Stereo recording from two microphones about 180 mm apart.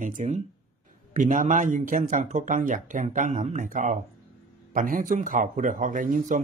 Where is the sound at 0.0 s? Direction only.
45° right (ahead or behind).